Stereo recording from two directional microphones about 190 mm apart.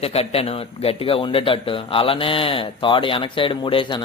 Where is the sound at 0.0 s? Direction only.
30° left (ahead or behind).